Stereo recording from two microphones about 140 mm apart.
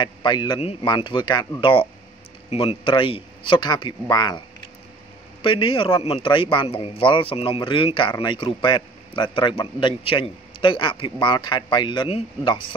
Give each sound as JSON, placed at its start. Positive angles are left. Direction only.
{"t": 0.0, "sound": "a man's voice", "side_deg": 35}
{"t": 5.4, "sound": "a man's voice", "side_deg": 40}